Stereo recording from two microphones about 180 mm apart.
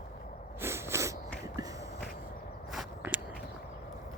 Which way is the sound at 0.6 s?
15° right (ahead or behind).